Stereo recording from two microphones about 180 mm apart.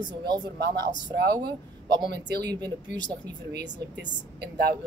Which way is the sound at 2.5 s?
25° right (ahead or behind).